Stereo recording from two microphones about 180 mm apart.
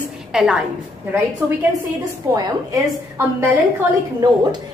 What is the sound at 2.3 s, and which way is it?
A woman's voice, 20° right (ahead or behind).